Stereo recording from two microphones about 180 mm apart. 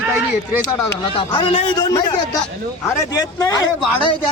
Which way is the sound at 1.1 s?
30° left (ahead or behind).